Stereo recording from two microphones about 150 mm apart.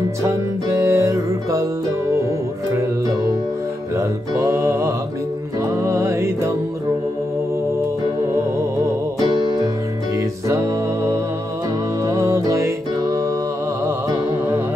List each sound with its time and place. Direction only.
0.2 s music: 20° right (ahead or behind)
3.9 s music: 20° right (ahead or behind)
8.8 s music: 25° right (ahead or behind)
12.0 s music: 20° right (ahead or behind)